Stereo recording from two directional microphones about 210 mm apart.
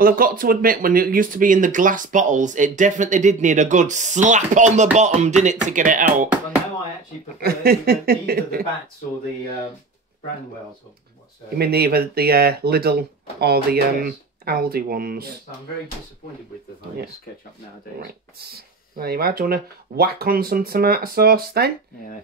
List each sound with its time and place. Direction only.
0.0 s speech: 45° right (ahead or behind)
6.2 s speech: 5° right (ahead or behind)
7.3 s speech: 45° right (ahead or behind)
11.5 s speech: 45° right (ahead or behind)
18.0 s speech: 50° right (ahead or behind)